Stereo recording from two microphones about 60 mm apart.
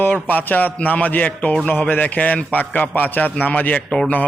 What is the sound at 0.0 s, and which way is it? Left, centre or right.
A man's voice, left.